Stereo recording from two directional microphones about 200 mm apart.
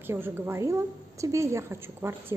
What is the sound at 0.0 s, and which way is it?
A woman's voice, 10° right (ahead or behind).